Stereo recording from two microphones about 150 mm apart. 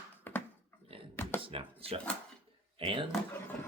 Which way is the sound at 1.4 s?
35° right (ahead or behind).